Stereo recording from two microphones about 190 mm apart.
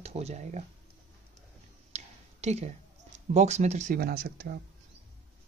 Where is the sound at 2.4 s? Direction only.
35° right (ahead or behind); by 4.6 s 50° right (ahead or behind).